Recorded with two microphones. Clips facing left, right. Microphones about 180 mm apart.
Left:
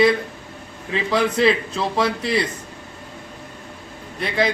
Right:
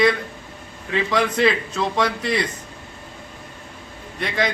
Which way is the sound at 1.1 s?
30° left (ahead or behind).